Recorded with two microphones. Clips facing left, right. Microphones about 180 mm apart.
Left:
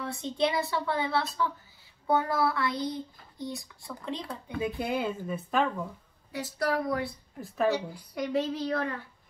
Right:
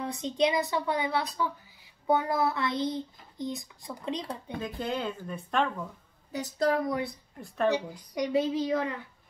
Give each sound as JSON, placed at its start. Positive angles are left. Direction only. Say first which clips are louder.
{"t": 0.0, "sound": "speech", "louder": "right 2 dB", "side_deg": -15}
{"t": 2.0, "sound": "a sound", "louder": "even", "side_deg": -15}
{"t": 4.6, "sound": "speech", "louder": "left 3 dB", "side_deg": 10}
{"t": 6.3, "sound": "a sound", "louder": "right 2 dB", "side_deg": -20}
{"t": 7.3, "sound": "speech", "louder": "even", "side_deg": 0}
{"t": 8.1, "sound": "speech", "louder": "right 2 dB", "side_deg": -15}